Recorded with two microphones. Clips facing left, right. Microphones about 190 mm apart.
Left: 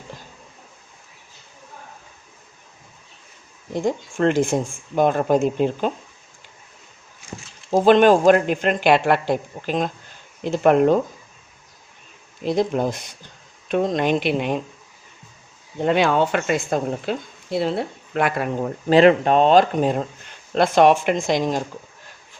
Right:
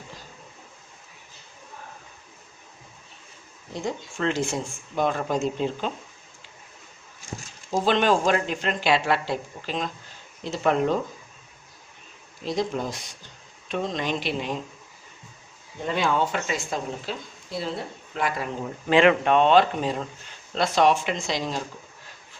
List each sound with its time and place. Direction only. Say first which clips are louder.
3.7 s speech: left 7 dB; 50° left (ahead or behind)
7.7 s speech: left 8 dB; 50° left (ahead or behind)
12.4 s speech: left 6 dB; 55° left (ahead or behind)
15.8 s speech: left 6 dB; 70° left (ahead or behind)
18.9 s speech: left 5 dB; 35° left (ahead or behind)
20.5 s speech: left 6 dB; 55° left (ahead or behind)